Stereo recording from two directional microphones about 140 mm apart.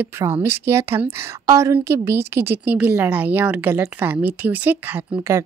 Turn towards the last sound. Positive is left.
turn(degrees=-15)  # may be behind; listen again after turning